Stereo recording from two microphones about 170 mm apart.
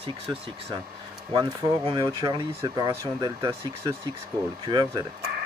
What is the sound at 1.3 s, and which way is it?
Speech, 25° right (ahead or behind).